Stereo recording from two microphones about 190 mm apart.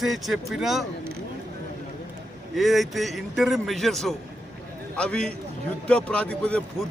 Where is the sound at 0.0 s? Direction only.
Centre (ahead or behind).